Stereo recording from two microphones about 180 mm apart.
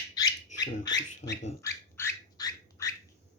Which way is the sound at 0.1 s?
20° left (ahead or behind).